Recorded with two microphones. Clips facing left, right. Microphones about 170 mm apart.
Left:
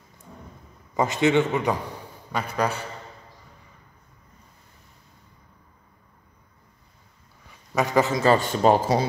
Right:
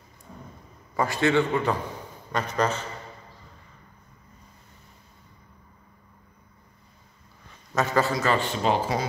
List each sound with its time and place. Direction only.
0.9 s a man's voice: 20° left (ahead or behind)
7.7 s a man's voice: 15° left (ahead or behind)
8.5 s speech: 40° left (ahead or behind)